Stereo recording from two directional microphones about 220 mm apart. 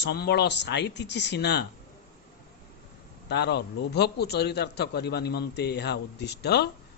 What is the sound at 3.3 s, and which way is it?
A man's voice, 50° left (ahead or behind).